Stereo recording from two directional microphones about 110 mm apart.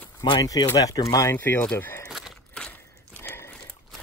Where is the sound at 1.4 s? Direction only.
15° left (ahead or behind).